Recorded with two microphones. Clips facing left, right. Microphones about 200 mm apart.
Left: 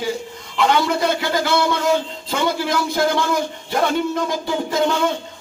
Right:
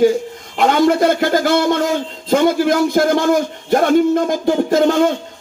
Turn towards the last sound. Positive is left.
turn(degrees=-45)  # may be behind; listen again after turning